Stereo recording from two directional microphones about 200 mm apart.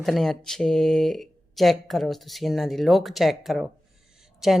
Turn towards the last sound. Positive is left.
turn(degrees=0)  # may be behind; listen again after turning